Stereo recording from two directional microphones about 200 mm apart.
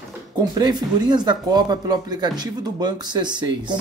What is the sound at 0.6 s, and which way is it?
Speech, 20° right (ahead or behind).